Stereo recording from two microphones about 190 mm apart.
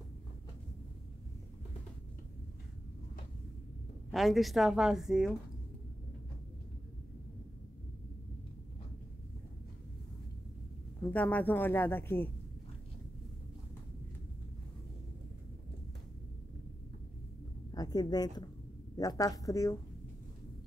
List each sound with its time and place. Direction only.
4.1 s a woman's voice: centre (ahead or behind)
11.1 s speech: 10° left (ahead or behind)
17.6 s a sound: 20° left (ahead or behind)
18.9 s speech: 20° left (ahead or behind)